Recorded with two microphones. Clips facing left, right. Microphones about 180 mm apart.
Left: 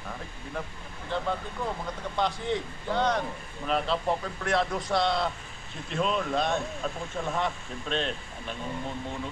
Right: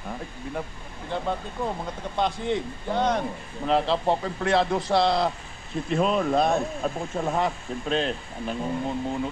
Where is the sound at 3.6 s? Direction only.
30° right (ahead or behind).